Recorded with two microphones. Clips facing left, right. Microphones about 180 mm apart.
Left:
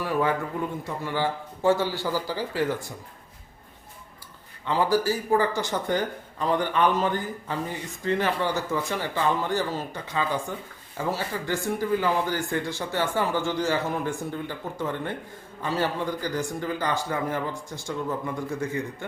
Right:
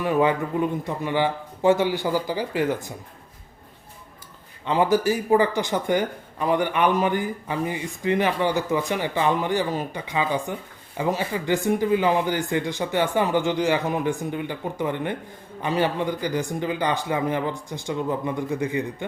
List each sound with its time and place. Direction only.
0.0 s speech: 20° right (ahead or behind)
4.6 s speech: 20° right (ahead or behind)